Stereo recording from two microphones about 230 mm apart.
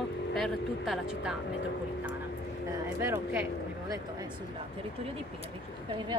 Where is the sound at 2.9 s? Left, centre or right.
Centre.